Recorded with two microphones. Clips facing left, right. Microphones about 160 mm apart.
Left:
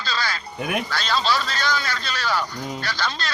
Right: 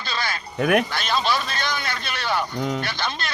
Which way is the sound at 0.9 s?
20° right (ahead or behind).